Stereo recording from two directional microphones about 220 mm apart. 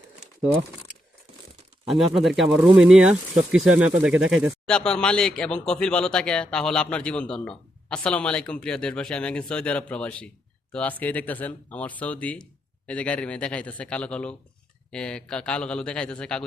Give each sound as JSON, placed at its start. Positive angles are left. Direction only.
{"t": 1.9, "sound": "speech", "side_deg": 0}